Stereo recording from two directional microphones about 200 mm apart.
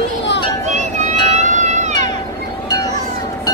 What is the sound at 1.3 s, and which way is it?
Music, 35° right (ahead or behind).